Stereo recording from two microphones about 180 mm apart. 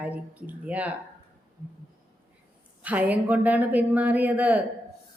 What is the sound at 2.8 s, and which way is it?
A woman's voice, 10° right (ahead or behind).